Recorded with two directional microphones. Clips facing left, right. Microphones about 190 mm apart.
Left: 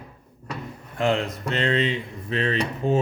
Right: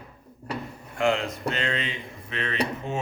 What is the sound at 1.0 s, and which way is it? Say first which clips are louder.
A man's voice: left 1 dB; 35° left (ahead or behind).